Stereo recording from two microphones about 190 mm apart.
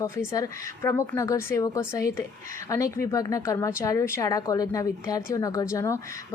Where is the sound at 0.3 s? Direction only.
15° left (ahead or behind).